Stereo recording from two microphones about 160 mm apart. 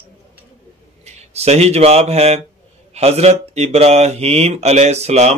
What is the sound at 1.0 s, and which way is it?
Speech, 45° right (ahead or behind).